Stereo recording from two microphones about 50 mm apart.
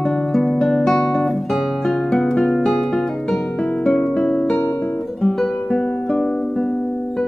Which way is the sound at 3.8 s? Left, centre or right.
Centre.